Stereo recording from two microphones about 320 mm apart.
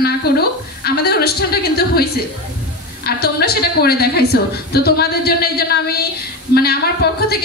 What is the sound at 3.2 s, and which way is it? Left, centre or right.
A woman's voice, left.